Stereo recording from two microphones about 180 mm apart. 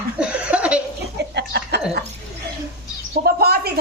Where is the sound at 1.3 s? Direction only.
70° right (ahead or behind).